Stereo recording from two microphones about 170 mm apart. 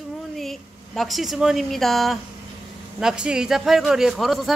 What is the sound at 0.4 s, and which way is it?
A woman's voice, centre (ahead or behind).